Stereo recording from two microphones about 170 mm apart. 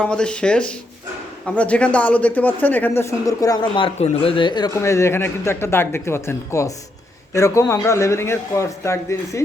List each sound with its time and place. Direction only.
0.0 s speech: 5° left (ahead or behind)